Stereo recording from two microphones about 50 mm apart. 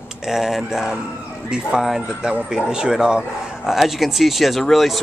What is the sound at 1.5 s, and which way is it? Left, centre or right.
Speech, centre.